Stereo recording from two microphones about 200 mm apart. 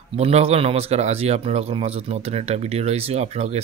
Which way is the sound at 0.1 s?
30° right (ahead or behind).